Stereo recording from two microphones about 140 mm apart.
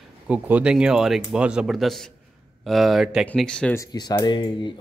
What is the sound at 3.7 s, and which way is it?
Speech, 30° left (ahead or behind).